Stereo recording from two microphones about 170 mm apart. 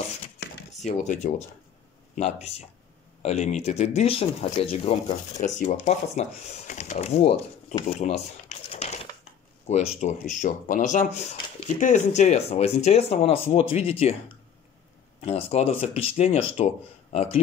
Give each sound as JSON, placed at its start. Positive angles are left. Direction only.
{"t": 0.8, "sound": "speech", "side_deg": 45}
{"t": 3.2, "sound": "speech", "side_deg": 40}
{"t": 15.1, "sound": "speech", "side_deg": 35}